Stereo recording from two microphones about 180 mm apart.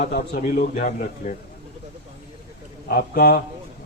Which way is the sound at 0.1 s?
60° left (ahead or behind).